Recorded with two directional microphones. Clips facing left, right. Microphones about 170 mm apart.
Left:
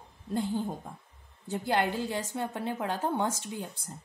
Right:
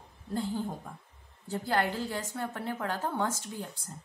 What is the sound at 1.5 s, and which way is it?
A woman's voice, 20° left (ahead or behind).